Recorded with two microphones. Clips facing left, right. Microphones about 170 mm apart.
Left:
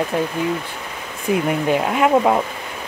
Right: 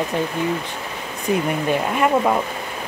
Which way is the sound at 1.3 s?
15° left (ahead or behind).